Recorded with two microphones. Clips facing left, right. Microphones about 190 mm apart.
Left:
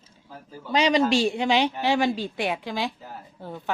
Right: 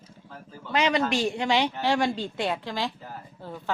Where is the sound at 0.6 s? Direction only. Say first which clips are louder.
Left 3 dB; 15° left (ahead or behind).